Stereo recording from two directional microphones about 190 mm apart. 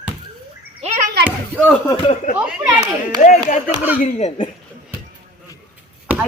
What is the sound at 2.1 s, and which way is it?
Speech, 45° left (ahead or behind).